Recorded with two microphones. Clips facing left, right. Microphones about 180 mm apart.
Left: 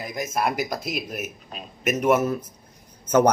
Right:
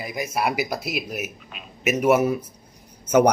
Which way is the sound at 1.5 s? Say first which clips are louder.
Left 4 dB; 40° left (ahead or behind).